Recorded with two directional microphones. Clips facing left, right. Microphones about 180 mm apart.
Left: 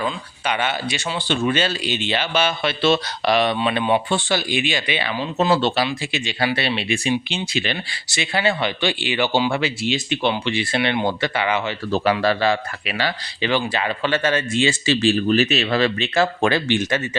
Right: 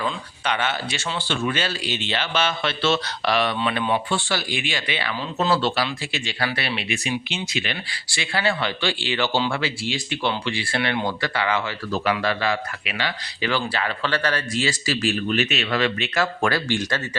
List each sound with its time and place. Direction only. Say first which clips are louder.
0.0 s speech: left 2 dB; 10° left (ahead or behind)
11.9 s speech: left 5 dB; 30° left (ahead or behind)
13.4 s speech: left 3 dB; 20° left (ahead or behind)